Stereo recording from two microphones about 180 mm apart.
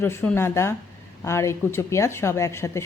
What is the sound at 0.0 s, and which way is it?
Speech, 10° left (ahead or behind).